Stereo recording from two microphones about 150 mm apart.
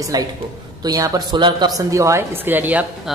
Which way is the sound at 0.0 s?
25° right (ahead or behind).